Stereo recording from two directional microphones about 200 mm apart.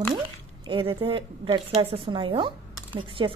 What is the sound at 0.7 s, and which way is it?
A woman's voice, 25° right (ahead or behind).